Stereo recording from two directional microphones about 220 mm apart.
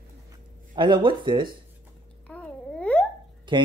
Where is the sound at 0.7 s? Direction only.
20° right (ahead or behind).